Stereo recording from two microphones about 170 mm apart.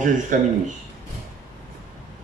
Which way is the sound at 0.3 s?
50° right (ahead or behind).